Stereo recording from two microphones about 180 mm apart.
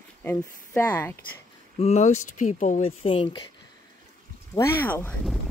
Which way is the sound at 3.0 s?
30° left (ahead or behind).